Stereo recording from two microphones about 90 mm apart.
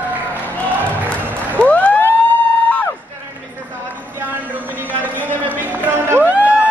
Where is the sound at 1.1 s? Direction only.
15° left (ahead or behind).